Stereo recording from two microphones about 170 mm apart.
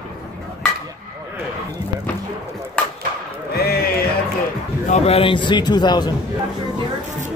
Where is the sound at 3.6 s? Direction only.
65° left (ahead or behind).